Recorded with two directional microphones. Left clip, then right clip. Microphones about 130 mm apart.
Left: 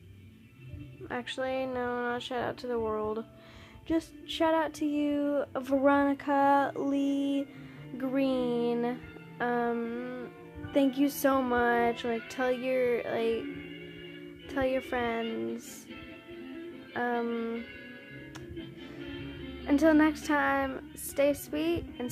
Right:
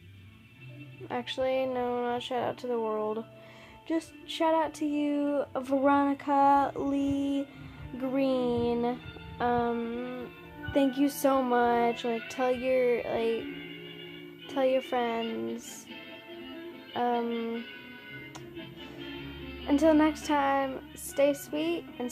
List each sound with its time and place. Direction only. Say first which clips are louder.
1.0 s speech: right 3 dB; 15° right (ahead or behind)
14.5 s speech: right 3 dB; 15° right (ahead or behind)
15.2 s music: even; 20° right (ahead or behind)
16.9 s speech: right 2 dB; 15° right (ahead or behind)
19.6 s speech: even; 5° right (ahead or behind)